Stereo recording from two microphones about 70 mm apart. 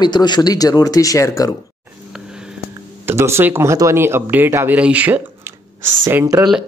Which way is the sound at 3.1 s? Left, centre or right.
Right.